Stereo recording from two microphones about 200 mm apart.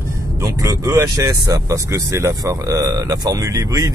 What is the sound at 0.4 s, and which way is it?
Speech, 15° right (ahead or behind).